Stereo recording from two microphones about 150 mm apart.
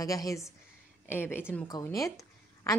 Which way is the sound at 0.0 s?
25° left (ahead or behind).